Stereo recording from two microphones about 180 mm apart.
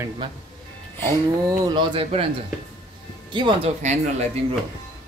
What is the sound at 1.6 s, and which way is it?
Speech, 30° right (ahead or behind).